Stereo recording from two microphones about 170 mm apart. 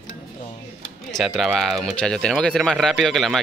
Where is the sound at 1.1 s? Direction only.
Centre (ahead or behind).